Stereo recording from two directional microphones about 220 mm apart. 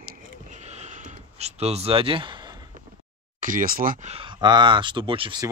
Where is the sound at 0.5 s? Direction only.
30° right (ahead or behind).